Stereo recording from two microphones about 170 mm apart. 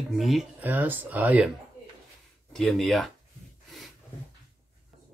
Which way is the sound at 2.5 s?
Centre (ahead or behind).